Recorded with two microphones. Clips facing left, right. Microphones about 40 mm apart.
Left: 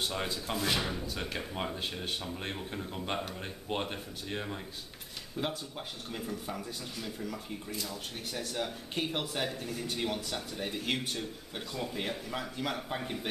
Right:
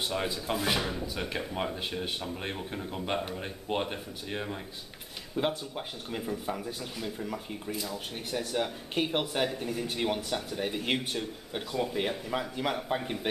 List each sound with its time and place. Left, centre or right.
0.0 s speech: centre
5.3 s speech: centre